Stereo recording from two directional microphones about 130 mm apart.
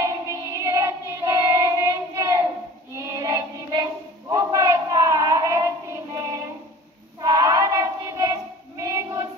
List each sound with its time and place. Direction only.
0.0 s child singing: 25° right (ahead or behind)